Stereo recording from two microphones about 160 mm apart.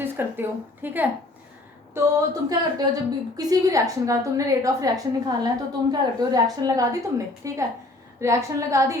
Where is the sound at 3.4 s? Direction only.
20° right (ahead or behind).